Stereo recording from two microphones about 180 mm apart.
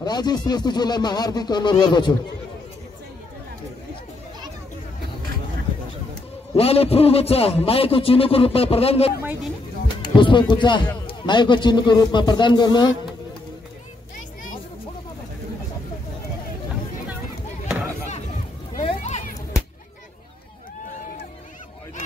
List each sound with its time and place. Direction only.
0.0 s speech: 25° left (ahead or behind)
6.5 s a man's voice: 35° left (ahead or behind)
9.2 s speech: 10° right (ahead or behind)
10.0 s speech: 25° left (ahead or behind)
18.8 s a sound: 35° left (ahead or behind)